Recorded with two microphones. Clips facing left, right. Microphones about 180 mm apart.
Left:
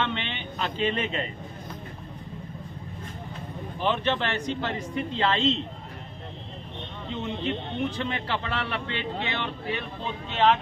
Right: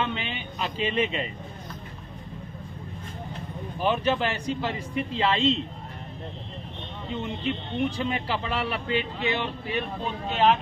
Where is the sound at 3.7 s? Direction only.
10° right (ahead or behind).